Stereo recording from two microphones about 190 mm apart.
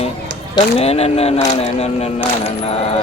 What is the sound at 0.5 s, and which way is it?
Speech, 30° left (ahead or behind).